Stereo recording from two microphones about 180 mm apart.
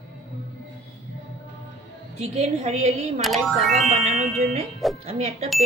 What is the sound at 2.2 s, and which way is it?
Speech, 40° right (ahead or behind).